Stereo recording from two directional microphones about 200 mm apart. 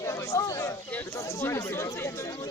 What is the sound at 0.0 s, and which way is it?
Speech, 15° left (ahead or behind).